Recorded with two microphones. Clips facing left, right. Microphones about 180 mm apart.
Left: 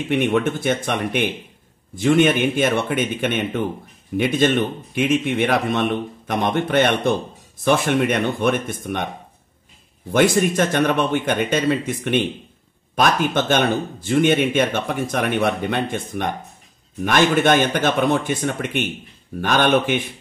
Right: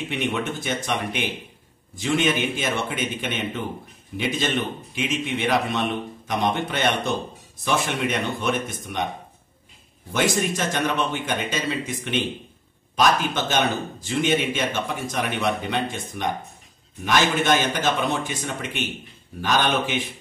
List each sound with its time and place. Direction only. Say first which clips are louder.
0.1 s speech: left 9 dB; 55° left (ahead or behind)
10.1 s speech: left 7 dB; 55° left (ahead or behind)
12.9 s speech: left 3 dB; 55° left (ahead or behind)